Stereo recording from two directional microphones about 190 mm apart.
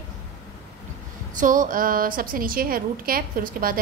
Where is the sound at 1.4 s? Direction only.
45° right (ahead or behind).